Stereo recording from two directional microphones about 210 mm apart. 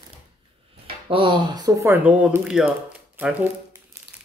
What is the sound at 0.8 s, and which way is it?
Speech, 25° right (ahead or behind).